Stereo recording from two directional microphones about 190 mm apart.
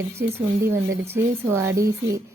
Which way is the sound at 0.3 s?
15° right (ahead or behind).